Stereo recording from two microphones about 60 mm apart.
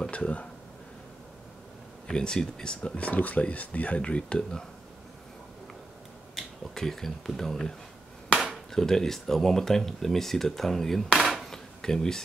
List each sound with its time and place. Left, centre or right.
0.1 s speech: left
2.0 s speech: centre
6.3 s speech: centre
8.7 s speech: centre
11.1 s dishes: centre